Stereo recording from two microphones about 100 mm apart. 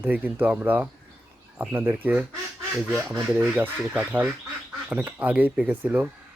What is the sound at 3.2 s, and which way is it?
Speech, 10° right (ahead or behind).